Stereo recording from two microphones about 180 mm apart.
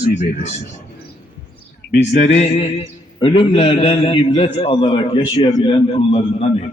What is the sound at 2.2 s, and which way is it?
A man's voice, 35° left (ahead or behind).